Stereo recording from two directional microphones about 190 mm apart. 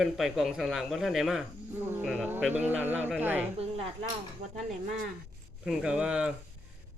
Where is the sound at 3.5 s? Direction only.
35° right (ahead or behind).